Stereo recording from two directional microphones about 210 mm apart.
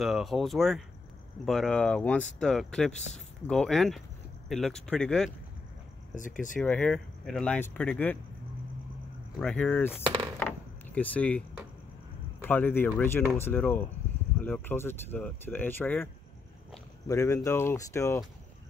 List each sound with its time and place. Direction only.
0.0 s speech: centre (ahead or behind)
6.6 s speech: 5° left (ahead or behind)
9.4 s speech: 5° left (ahead or behind)
10.0 s wood: 20° right (ahead or behind)
10.4 s door: 10° left (ahead or behind)
12.4 s speech: 10° left (ahead or behind)
17.1 s speech: 15° left (ahead or behind)